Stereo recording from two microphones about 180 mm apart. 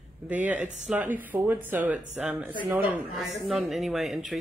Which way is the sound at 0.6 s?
40° right (ahead or behind).